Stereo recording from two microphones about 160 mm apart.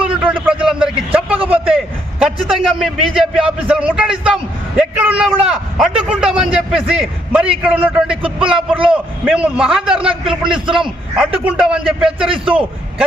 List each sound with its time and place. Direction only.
0.0 s a sound: 10° right (ahead or behind)
4.8 s a man's voice: 10° right (ahead or behind)
8.2 s speech: 35° right (ahead or behind)
8.9 s a man's voice: 5° right (ahead or behind)
12.3 s speech: 35° right (ahead or behind)